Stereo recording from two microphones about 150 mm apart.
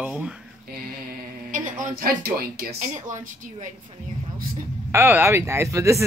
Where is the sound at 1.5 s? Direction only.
60° right (ahead or behind).